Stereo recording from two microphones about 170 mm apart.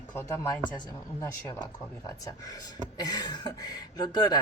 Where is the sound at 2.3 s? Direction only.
20° left (ahead or behind).